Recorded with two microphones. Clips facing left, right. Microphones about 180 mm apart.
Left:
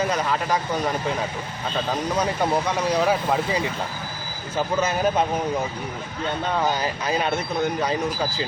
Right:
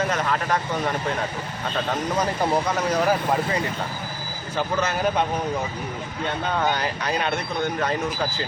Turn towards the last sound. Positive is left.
turn(degrees=5)  # may be behind; listen again after turning